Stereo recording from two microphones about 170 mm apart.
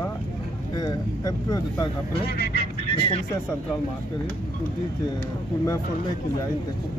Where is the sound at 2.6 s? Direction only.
35° left (ahead or behind).